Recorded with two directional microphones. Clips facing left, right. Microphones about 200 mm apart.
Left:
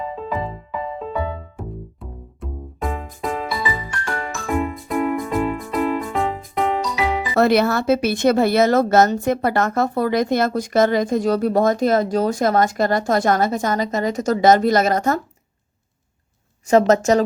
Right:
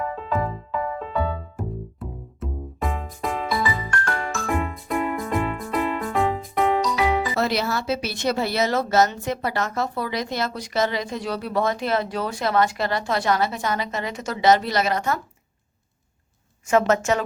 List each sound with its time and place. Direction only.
0.2 s music: 10° left (ahead or behind)
0.9 s music: 5° left (ahead or behind)
7.3 s speech: 55° left (ahead or behind)
16.6 s a woman's voice: 35° left (ahead or behind)